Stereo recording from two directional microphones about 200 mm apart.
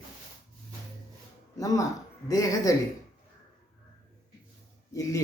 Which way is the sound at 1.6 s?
15° left (ahead or behind).